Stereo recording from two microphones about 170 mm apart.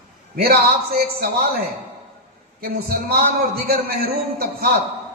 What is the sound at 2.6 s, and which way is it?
A man's voice, 65° right (ahead or behind).